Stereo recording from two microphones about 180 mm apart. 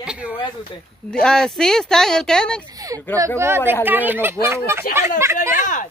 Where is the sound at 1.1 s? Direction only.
5° left (ahead or behind).